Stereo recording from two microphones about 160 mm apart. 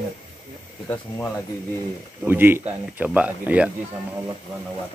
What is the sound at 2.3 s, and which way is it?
Speech, 15° right (ahead or behind).